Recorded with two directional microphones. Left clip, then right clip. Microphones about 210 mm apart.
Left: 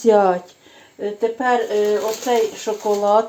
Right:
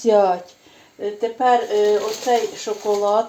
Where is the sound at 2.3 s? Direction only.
25° left (ahead or behind).